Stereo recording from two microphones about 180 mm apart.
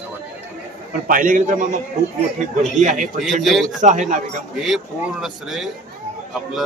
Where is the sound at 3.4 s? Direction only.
Centre (ahead or behind).